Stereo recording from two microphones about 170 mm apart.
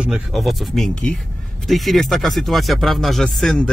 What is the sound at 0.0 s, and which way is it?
A man's voice, centre (ahead or behind).